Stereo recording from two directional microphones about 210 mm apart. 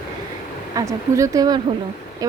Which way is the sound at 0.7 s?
15° right (ahead or behind).